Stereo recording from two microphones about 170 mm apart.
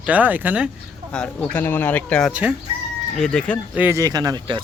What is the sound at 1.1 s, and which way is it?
Speech, 5° left (ahead or behind).